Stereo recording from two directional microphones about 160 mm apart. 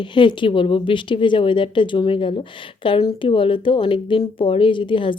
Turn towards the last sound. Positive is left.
turn(degrees=30)  # may be behind; listen again after turning